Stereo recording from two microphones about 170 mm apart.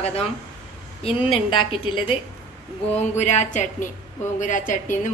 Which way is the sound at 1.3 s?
30° left (ahead or behind).